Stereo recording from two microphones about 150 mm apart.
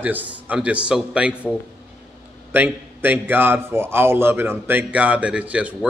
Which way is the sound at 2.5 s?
10° right (ahead or behind).